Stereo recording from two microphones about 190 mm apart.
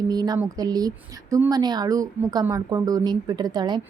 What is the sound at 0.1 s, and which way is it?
A woman's voice, 20° right (ahead or behind).